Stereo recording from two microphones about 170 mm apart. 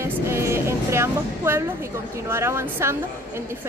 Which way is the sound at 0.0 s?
15° right (ahead or behind).